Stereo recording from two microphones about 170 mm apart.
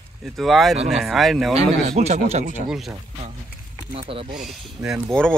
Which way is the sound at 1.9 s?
40° right (ahead or behind).